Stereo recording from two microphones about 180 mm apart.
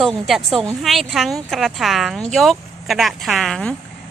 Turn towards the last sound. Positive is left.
turn(degrees=0)  # may be behind; listen again after turning